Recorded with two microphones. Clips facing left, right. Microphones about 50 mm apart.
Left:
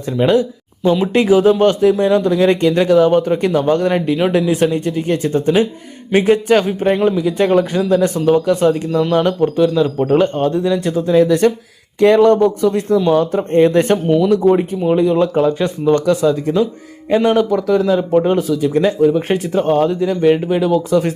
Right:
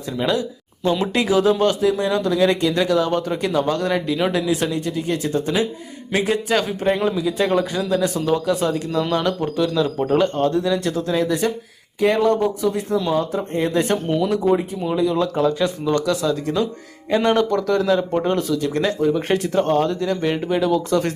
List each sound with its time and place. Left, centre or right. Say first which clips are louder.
0.2 s speech: left 8 dB; left
0.8 s speech: left 5 dB; centre
1.1 s speech: left 6 dB; left
6.7 s speech: left 5 dB; centre
7.2 s speech: left 5 dB; left
8.9 s speech: left 6 dB; centre
12.3 s speech: left 7 dB; left
13.1 s speech: left 7 dB; left
13.7 s speech: left 7 dB; left
14.0 s speech: left 7 dB; centre
14.8 s speech: left 6 dB; left
17.1 s speech: left 4 dB; centre